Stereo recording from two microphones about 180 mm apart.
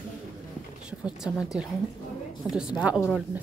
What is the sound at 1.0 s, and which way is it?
Speech, 5° right (ahead or behind).